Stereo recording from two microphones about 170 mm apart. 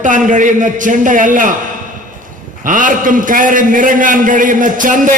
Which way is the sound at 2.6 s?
50° right (ahead or behind).